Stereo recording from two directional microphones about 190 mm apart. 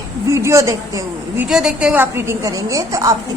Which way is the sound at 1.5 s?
5° right (ahead or behind).